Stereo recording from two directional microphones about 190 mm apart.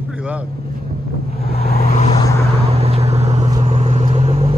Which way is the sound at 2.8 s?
30° right (ahead or behind).